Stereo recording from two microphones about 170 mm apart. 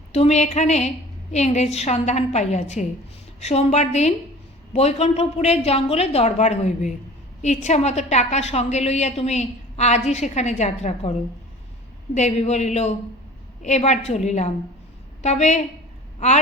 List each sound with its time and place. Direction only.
0.1 s a woman's voice: 40° left (ahead or behind)
12.1 s a woman's voice: 40° left (ahead or behind)